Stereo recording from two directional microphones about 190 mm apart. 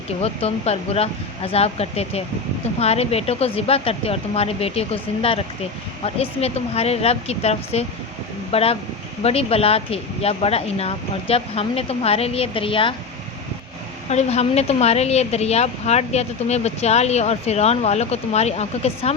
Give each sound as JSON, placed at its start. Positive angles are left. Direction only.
{"t": 0.2, "sound": "a woman's voice", "side_deg": 35}
{"t": 14.1, "sound": "a woman's voice", "side_deg": 35}